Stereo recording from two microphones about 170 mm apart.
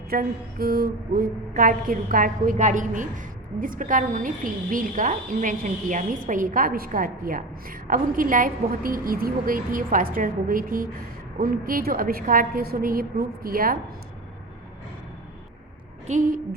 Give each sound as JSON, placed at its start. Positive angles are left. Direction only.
{"t": 0.1, "sound": "a woman's voice", "side_deg": -60}
{"t": 16.0, "sound": "a woman's voice", "side_deg": -50}